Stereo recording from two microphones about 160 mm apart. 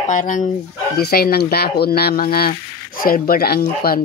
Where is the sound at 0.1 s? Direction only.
55° left (ahead or behind).